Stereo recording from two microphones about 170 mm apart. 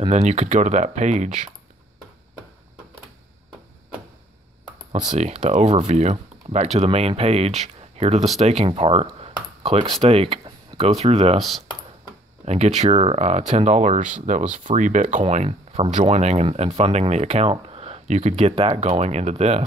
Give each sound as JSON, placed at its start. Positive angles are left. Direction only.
{"t": 0.1, "sound": "speech", "side_deg": -40}
{"t": 5.1, "sound": "speech", "side_deg": -40}
{"t": 9.6, "sound": "a sound", "side_deg": -35}
{"t": 10.0, "sound": "speech", "side_deg": -35}
{"t": 11.3, "sound": "speech", "side_deg": 0}
{"t": 12.4, "sound": "speech", "side_deg": -40}